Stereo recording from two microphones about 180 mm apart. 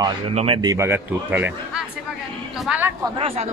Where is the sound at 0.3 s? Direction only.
35° right (ahead or behind).